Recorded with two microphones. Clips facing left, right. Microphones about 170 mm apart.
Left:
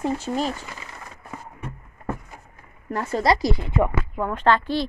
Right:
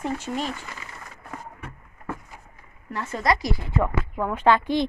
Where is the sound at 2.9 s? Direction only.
40° left (ahead or behind); by 3.9 s 20° left (ahead or behind).